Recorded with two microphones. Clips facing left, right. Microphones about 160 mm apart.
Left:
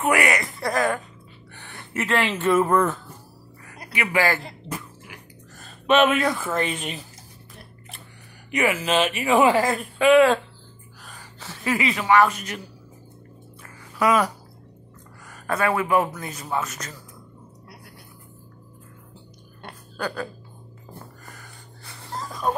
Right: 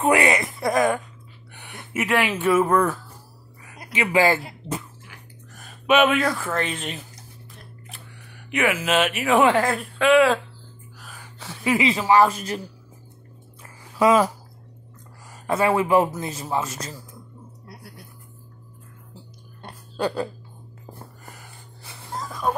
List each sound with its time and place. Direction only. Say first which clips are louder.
0.0 s a man's voice: right 2 dB; 25° right (ahead or behind); by 3.0 s 5° right (ahead or behind)
3.6 s speech: right 3 dB; 20° right (ahead or behind)
5.6 s a sound: even; 10° right (ahead or behind)
6.0 s speech: even; 5° left (ahead or behind)
8.5 s speech: even; centre (ahead or behind)
11.0 s a sound: right 1 dB; 5° right (ahead or behind)
11.7 s speech: right 1 dB; 25° right (ahead or behind)
13.6 s a sound: right 4 dB; 25° right (ahead or behind)
15.2 s a man's voice: right 2 dB; 25° right (ahead or behind)
20.0 s a man's voice: right 5 dB; 30° right (ahead or behind)
21.3 s wheeze: even; 20° right (ahead or behind)
22.1 s wheeze: even; centre (ahead or behind)